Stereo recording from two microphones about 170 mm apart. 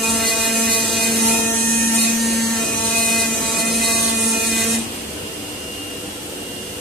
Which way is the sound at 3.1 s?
Centre (ahead or behind).